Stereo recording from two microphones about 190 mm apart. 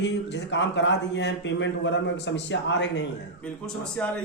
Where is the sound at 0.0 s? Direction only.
65° left (ahead or behind).